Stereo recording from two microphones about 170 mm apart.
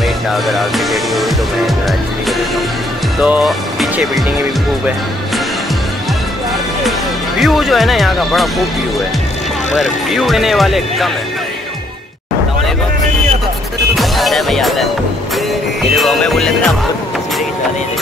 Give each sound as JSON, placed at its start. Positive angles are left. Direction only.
{"t": 0.3, "sound": "speech", "side_deg": 0}
{"t": 3.2, "sound": "speech", "side_deg": -5}
{"t": 7.3, "sound": "speech", "side_deg": 0}
{"t": 9.8, "sound": "speech", "side_deg": 0}
{"t": 13.9, "sound": "speech", "side_deg": 0}
{"t": 16.0, "sound": "speech", "side_deg": 0}